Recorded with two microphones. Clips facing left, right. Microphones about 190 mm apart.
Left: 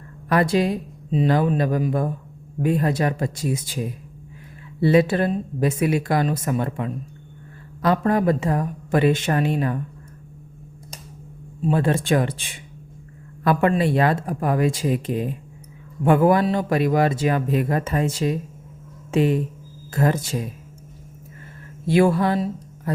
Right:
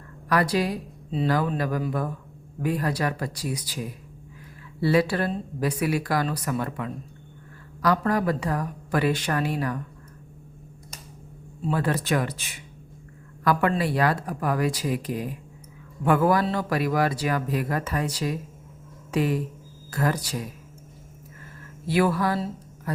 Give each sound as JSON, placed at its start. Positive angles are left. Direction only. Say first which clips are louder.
{"t": 0.3, "sound": "a man's voice", "louder": "left 4 dB", "side_deg": 25}
{"t": 11.6, "sound": "a man's voice", "louder": "left 5 dB", "side_deg": 25}
{"t": 21.8, "sound": "a man's voice", "louder": "left 5 dB", "side_deg": 25}